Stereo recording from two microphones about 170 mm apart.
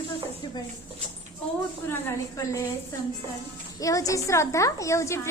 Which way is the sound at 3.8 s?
20° left (ahead or behind).